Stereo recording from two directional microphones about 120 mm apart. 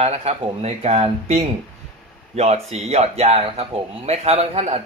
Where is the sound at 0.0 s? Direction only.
60° right (ahead or behind).